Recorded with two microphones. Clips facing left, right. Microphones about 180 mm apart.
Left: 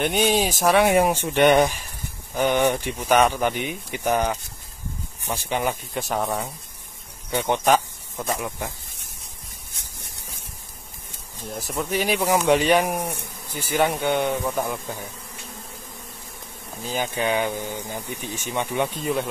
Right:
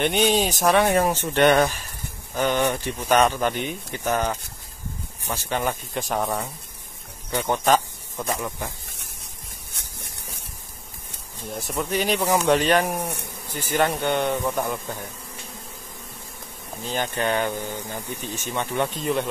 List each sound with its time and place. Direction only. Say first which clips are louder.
0.0 s speech: even; 5° left (ahead or behind)
5.3 s speech: left 1 dB; 15° left (ahead or behind)
7.2 s speech: left 1 dB; 15° left (ahead or behind)
9.8 s a sound: right 2 dB; 65° right (ahead or behind)
11.4 s speech: even; centre (ahead or behind)
16.8 s speech: even; 10° left (ahead or behind)
18.9 s speech: even; centre (ahead or behind)